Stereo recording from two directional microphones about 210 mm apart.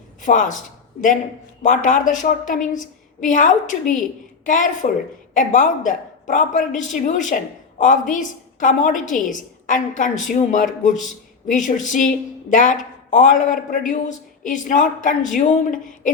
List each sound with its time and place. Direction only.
0.2 s a woman's voice: 35° left (ahead or behind)
1.6 s a woman's voice: 40° left (ahead or behind)